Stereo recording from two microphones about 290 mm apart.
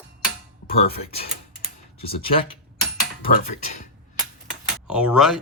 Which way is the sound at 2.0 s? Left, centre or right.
Centre.